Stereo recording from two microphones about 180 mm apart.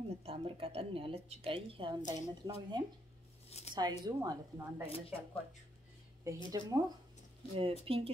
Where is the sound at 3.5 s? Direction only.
40° left (ahead or behind).